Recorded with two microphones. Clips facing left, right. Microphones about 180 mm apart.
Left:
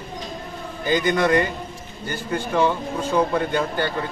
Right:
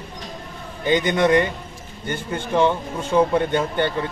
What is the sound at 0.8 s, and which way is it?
Speech, 25° right (ahead or behind).